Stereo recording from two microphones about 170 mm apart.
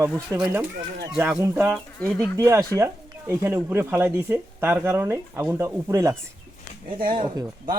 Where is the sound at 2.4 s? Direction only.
15° right (ahead or behind).